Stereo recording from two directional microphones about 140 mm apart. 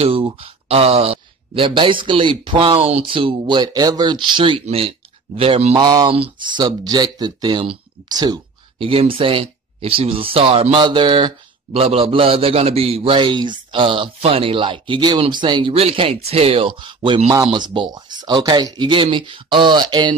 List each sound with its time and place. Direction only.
0.0 s speech: 40° right (ahead or behind)
5.8 s speech: 30° right (ahead or behind)
8.7 s speech: 40° right (ahead or behind)